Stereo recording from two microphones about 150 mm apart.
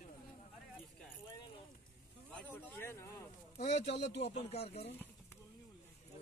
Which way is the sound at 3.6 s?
45° left (ahead or behind).